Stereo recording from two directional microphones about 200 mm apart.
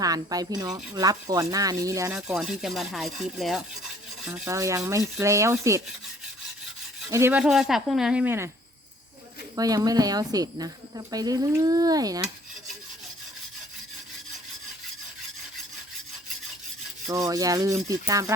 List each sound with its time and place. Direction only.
0.0 s speech: 20° right (ahead or behind)
2.1 s speech: centre (ahead or behind)
4.4 s rub: 15° right (ahead or behind)
7.1 s speech: 10° right (ahead or behind)
9.6 s speech: 20° right (ahead or behind)
17.1 s rub: 15° right (ahead or behind)